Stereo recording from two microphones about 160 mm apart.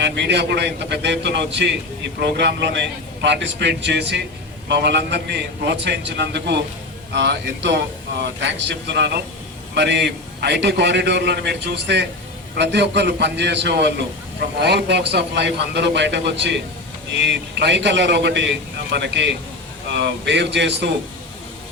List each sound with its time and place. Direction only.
0.0 s a man's voice: 90° right